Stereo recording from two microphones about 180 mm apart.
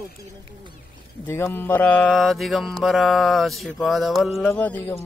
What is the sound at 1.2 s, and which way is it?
Mantra, 10° left (ahead or behind).